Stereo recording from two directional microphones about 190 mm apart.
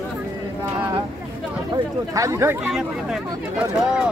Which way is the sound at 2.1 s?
15° right (ahead or behind).